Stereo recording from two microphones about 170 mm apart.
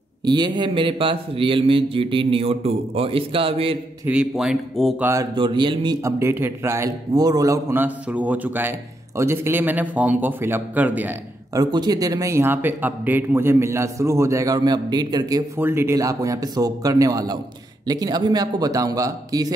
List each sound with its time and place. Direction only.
0.3 s a man's voice: 25° right (ahead or behind)
4.0 s a man's voice: 5° right (ahead or behind)
5.0 s a man's voice: 20° right (ahead or behind)
6.0 s a man's voice: 15° right (ahead or behind)
11.5 s a man's voice: 25° right (ahead or behind)